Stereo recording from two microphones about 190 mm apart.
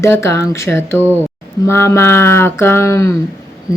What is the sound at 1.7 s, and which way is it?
Speech, 15° left (ahead or behind).